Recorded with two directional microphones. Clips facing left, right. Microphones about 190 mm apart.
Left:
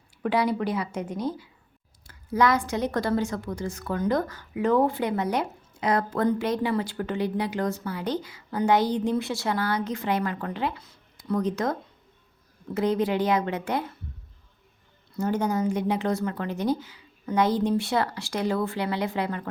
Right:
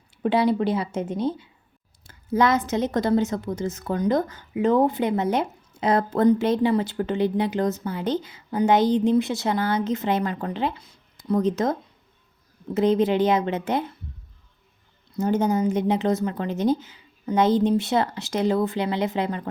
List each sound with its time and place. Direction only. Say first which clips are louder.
0.2 s a woman's voice: right 4 dB; 25° right (ahead or behind)
15.1 s a woman's voice: right 4 dB; 20° right (ahead or behind)